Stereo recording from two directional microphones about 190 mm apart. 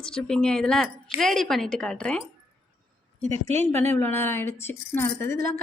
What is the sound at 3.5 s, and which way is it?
Speech, 35° right (ahead or behind).